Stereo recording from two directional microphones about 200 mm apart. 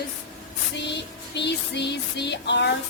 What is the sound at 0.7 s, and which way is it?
Music, 60° left (ahead or behind).